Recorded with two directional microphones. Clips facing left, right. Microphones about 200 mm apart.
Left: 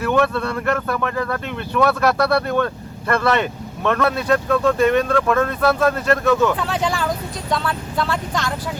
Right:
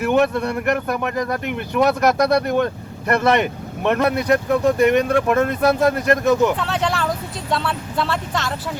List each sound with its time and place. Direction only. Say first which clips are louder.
0.1 s speech: right 1 dB; 15° right (ahead or behind)
6.6 s speech: even; centre (ahead or behind)